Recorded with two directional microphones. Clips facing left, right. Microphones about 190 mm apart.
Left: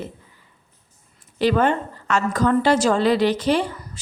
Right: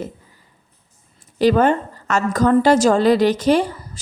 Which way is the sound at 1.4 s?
40° right (ahead or behind).